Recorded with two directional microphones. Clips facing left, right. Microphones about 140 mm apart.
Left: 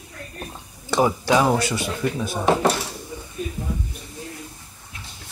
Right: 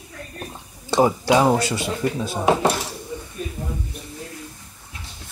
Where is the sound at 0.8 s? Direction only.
30° right (ahead or behind).